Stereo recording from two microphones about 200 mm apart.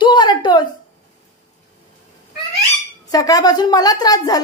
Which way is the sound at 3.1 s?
20° left (ahead or behind).